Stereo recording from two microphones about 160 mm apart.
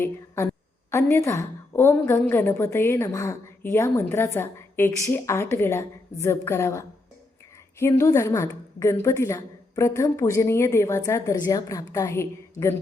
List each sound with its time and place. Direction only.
0.9 s a woman's voice: 15° left (ahead or behind)